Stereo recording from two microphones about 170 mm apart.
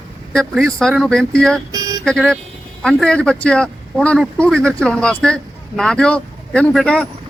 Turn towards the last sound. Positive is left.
turn(degrees=0)  # may be behind; listen again after turning